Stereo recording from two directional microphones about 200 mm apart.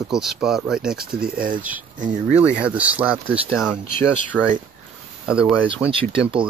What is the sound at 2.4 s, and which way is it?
Speech, 5° right (ahead or behind).